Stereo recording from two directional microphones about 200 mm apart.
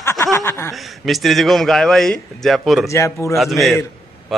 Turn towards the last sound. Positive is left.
turn(degrees=0)  # may be behind; listen again after turning